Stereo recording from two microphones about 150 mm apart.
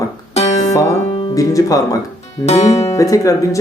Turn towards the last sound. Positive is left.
turn(degrees=20)  # may be behind; listen again after turning